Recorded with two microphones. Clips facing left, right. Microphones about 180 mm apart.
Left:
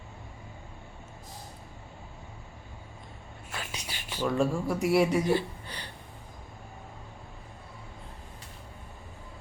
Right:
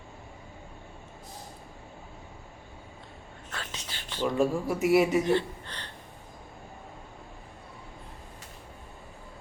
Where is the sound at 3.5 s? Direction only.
10° left (ahead or behind).